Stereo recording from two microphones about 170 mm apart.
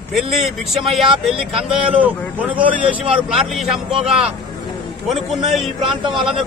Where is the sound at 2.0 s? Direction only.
10° right (ahead or behind).